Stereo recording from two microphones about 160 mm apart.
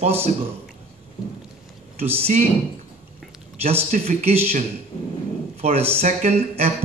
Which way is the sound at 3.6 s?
40° right (ahead or behind).